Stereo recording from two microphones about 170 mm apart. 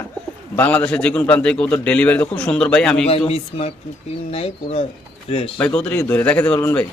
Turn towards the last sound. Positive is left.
turn(degrees=10)  # may be behind; listen again after turning